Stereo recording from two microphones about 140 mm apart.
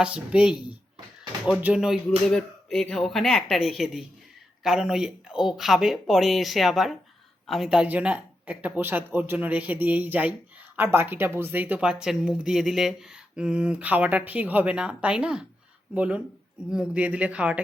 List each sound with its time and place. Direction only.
0.0 s speech: 5° right (ahead or behind)
1.6 s speech: 5° right (ahead or behind)